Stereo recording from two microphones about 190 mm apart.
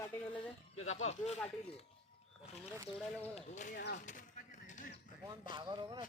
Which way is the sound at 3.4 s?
40° left (ahead or behind).